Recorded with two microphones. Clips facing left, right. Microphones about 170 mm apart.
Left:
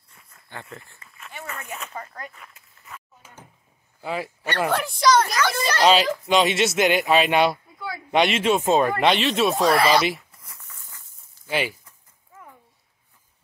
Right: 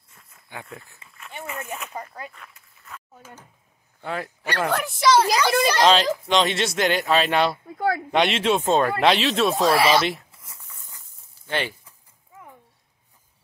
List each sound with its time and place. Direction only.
0.3 s speech: 10° right (ahead or behind)
4.0 s speech: 5° left (ahead or behind)
5.1 s a woman's voice: 15° right (ahead or behind)
5.8 s speech: 5° left (ahead or behind)
7.7 s a sound: 60° right (ahead or behind)
8.1 s speech: 5° left (ahead or behind)
11.4 s speech: 10° left (ahead or behind)